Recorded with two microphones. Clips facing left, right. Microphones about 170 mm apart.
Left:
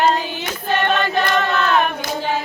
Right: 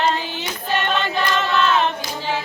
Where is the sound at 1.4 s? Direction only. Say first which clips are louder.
Right 1 dB; 20° right (ahead or behind).